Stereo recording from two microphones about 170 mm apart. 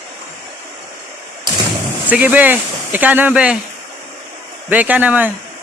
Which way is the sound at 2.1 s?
10° right (ahead or behind).